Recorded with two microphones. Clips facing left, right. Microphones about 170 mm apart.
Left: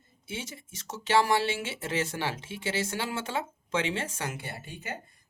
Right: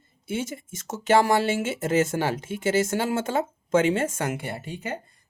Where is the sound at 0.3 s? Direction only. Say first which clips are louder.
Right 9 dB; 50° right (ahead or behind).